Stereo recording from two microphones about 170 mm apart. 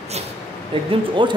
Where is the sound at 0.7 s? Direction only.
30° right (ahead or behind).